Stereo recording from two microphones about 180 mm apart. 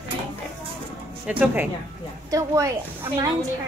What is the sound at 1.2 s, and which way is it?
A woman's voice, 10° right (ahead or behind).